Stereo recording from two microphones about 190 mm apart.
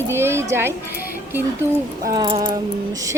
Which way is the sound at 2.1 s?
25° right (ahead or behind).